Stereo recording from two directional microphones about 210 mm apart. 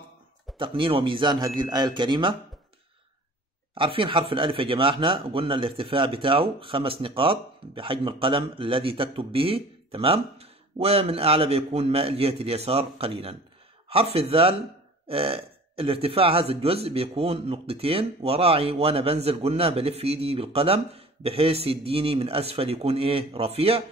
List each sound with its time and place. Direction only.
0.6 s speech: 25° right (ahead or behind)
3.7 s speech: 25° right (ahead or behind)